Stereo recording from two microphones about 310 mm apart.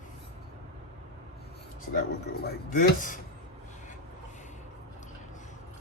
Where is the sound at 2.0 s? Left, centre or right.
Left.